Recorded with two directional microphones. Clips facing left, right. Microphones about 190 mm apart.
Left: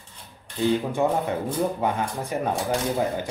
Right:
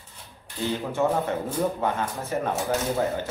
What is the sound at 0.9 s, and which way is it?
Speech, 15° left (ahead or behind).